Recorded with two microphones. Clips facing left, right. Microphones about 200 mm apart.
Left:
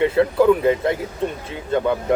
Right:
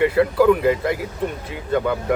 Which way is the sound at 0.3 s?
25° left (ahead or behind).